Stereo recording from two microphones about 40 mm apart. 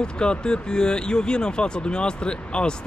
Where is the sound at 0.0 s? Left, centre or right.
Left.